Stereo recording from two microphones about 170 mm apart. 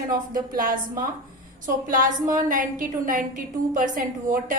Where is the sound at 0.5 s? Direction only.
55° right (ahead or behind).